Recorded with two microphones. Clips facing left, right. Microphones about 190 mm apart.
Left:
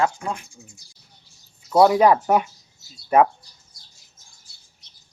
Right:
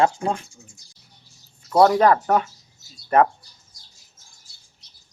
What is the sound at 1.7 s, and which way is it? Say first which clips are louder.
Speech: left 1 dB; 5° left (ahead or behind).